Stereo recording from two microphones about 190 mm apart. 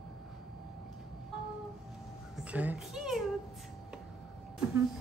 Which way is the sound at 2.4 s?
10° right (ahead or behind).